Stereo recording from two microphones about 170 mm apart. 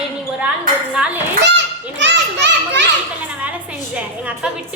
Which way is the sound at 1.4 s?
90° right.